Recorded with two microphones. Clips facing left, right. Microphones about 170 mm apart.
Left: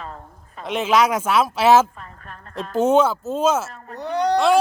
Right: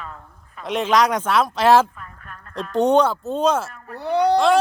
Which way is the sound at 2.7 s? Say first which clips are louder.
Even; 5° left (ahead or behind).